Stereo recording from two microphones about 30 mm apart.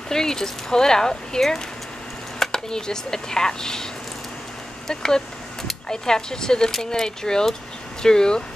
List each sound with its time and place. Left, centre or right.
0.1 s speech: centre